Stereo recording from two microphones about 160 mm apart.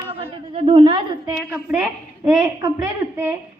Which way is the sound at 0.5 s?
35° right (ahead or behind).